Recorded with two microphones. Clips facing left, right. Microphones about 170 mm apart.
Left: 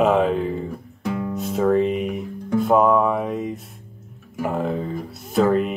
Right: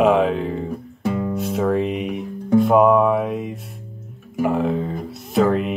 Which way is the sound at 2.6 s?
Centre (ahead or behind).